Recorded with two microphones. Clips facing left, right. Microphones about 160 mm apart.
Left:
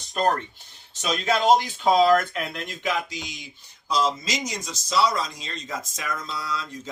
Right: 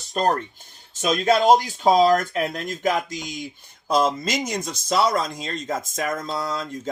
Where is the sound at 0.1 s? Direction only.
40° right (ahead or behind).